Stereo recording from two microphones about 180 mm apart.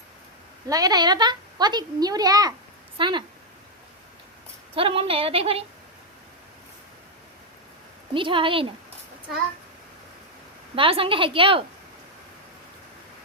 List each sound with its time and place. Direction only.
0.7 s a child's voice: 20° right (ahead or behind)
4.7 s a woman's voice: 30° right (ahead or behind)
8.1 s a child's voice: 30° right (ahead or behind)
10.8 s a child's voice: 30° right (ahead or behind)